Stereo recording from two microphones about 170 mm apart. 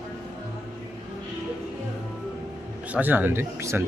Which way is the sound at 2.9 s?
10° right (ahead or behind).